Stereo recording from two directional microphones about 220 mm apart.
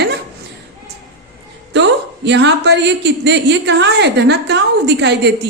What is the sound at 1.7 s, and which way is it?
A woman's voice, 50° right (ahead or behind).